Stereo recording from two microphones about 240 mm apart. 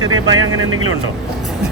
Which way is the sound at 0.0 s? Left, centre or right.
Centre.